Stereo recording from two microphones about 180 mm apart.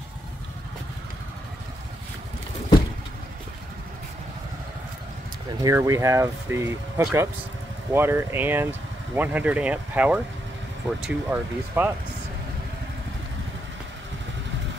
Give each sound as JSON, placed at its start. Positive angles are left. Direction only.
{"t": 5.6, "sound": "speech", "side_deg": -20}